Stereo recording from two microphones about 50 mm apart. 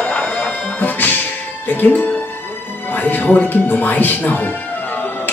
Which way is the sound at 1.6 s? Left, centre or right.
Left.